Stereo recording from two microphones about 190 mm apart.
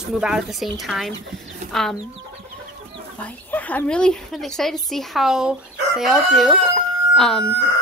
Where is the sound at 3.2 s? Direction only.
10° left (ahead or behind).